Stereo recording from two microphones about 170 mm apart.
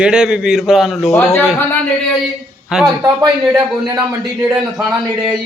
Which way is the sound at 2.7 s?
5° right (ahead or behind).